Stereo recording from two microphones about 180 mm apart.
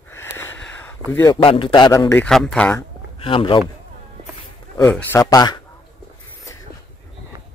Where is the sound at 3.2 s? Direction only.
30° left (ahead or behind).